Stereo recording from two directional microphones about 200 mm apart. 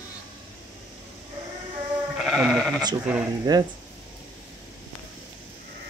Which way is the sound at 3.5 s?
20° right (ahead or behind).